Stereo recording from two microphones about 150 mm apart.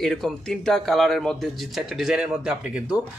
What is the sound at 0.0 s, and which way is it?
A man's voice, centre (ahead or behind).